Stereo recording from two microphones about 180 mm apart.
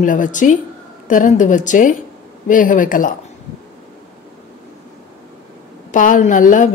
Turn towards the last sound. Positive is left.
turn(degrees=45)  # may be behind; listen again after turning